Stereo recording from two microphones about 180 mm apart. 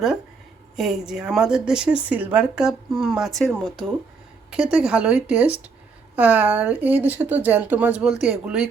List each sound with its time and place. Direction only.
0.8 s speech: 5° right (ahead or behind)